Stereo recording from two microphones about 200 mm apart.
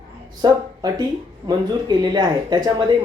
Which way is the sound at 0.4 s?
20° right (ahead or behind).